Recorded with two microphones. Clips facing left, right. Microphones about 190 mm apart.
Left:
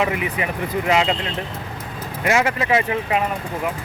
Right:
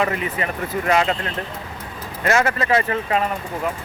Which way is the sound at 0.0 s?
15° left (ahead or behind).